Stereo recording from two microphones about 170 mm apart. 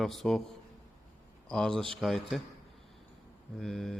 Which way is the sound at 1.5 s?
5° left (ahead or behind).